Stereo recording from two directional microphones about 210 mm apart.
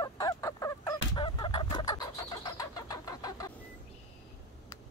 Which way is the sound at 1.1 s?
20° left (ahead or behind).